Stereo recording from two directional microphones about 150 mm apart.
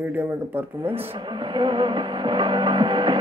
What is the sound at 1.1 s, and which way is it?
Music, 30° right (ahead or behind).